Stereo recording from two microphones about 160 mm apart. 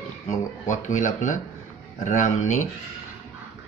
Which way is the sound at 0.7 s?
50° left (ahead or behind).